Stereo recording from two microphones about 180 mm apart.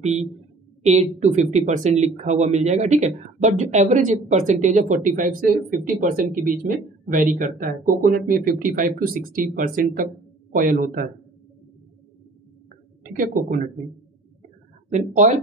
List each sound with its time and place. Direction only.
0.0 s speech: 40° right (ahead or behind)
13.1 s speech: 50° right (ahead or behind)
14.9 s speech: 40° right (ahead or behind)